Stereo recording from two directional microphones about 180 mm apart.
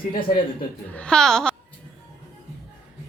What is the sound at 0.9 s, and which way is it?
Speech, 5° left (ahead or behind).